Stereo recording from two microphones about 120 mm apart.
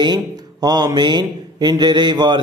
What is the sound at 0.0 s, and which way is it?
A man's voice, 35° right (ahead or behind).